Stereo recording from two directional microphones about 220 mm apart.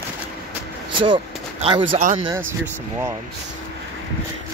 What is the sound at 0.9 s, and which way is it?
Speech, 20° right (ahead or behind).